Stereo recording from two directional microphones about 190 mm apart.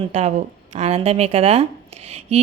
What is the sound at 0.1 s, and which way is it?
Speech, 35° right (ahead or behind).